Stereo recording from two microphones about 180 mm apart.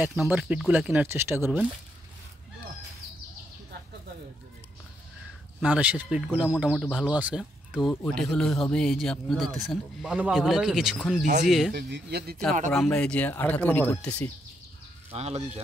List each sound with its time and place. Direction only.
0.3 s speech: 5° right (ahead or behind)
5.6 s speech: 5° right (ahead or behind)
7.9 s speech: 5° left (ahead or behind)
11.7 s speech: 65° right (ahead or behind)
12.7 s speech: 5° left (ahead or behind)
15.1 s speech: 35° right (ahead or behind)